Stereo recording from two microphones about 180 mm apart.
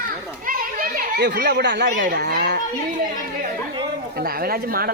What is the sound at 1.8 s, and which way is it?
Speech, 50° right (ahead or behind).